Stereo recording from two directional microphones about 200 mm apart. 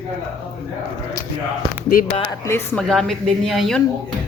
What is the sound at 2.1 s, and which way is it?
Speech, 25° left (ahead or behind).